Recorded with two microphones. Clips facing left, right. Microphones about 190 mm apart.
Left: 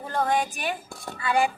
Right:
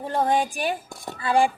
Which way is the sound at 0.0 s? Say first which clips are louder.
Right 3 dB; 30° right (ahead or behind).